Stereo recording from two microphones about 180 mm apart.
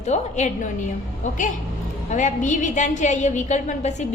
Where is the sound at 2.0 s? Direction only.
45° left (ahead or behind).